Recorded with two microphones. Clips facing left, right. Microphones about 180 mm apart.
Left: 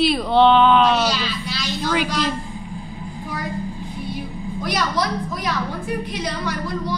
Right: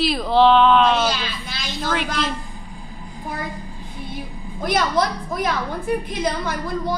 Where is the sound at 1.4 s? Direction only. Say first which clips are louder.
Left 4 dB; 50° right (ahead or behind).